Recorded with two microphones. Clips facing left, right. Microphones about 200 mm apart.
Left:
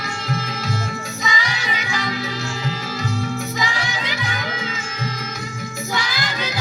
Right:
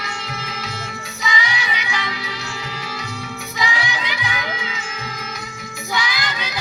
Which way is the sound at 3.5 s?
45° left (ahead or behind).